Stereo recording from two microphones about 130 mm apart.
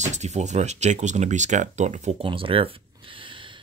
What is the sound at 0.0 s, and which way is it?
Speech, 65° right (ahead or behind).